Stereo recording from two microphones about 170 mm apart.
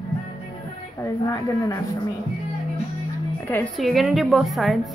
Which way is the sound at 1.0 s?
20° left (ahead or behind).